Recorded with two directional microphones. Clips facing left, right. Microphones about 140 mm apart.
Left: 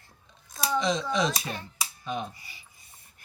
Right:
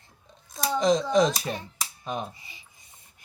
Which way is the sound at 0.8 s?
40° right (ahead or behind).